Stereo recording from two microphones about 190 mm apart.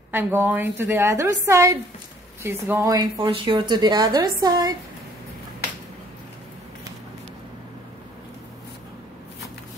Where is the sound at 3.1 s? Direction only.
25° right (ahead or behind).